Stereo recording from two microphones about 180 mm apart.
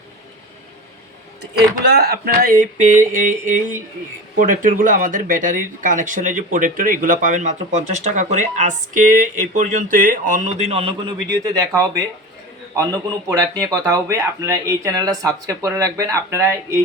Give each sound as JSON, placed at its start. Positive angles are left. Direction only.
{"t": 1.4, "sound": "speech", "side_deg": -65}